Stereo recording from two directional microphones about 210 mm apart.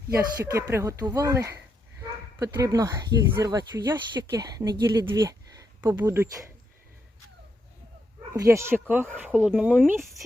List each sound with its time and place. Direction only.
0.1 s speech: 15° right (ahead or behind)
8.3 s speech: 15° right (ahead or behind)